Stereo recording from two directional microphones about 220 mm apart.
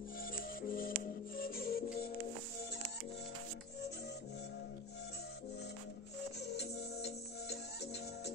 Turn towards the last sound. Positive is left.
turn(degrees=50)  # may be behind; listen again after turning